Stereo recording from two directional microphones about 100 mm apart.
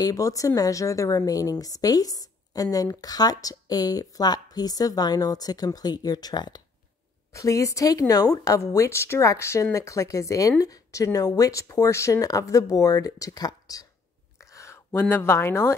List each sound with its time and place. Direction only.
0.0 s a woman's voice: 35° left (ahead or behind)
7.3 s a woman's voice: 30° left (ahead or behind)
14.5 s a sound: 30° left (ahead or behind)
14.9 s speech: 20° left (ahead or behind)